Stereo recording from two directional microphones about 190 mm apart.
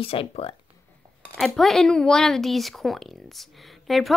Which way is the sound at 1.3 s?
Centre (ahead or behind).